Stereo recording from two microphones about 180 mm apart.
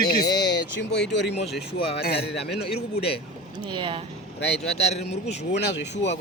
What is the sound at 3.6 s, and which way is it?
Speech, 25° right (ahead or behind).